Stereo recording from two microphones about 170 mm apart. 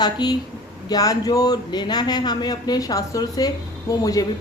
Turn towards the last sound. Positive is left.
turn(degrees=20)  # may be behind; listen again after turning